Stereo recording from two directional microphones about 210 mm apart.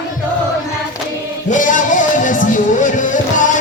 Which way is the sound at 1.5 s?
35° left (ahead or behind).